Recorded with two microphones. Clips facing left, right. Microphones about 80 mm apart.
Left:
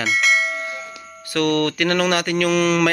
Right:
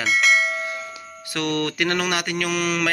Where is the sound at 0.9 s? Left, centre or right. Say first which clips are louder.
Left 6 dB; centre.